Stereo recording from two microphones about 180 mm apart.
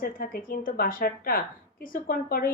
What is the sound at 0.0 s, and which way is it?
A woman's voice, 55° left (ahead or behind).